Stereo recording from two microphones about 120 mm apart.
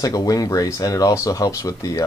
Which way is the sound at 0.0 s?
30° left (ahead or behind).